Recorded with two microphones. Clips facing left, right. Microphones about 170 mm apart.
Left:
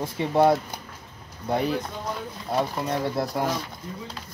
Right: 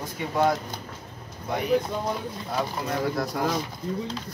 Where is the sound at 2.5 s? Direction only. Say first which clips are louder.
Left 3 dB; 25° left (ahead or behind).